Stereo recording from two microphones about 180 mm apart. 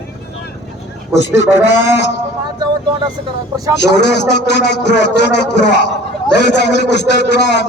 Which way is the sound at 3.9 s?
70° left (ahead or behind).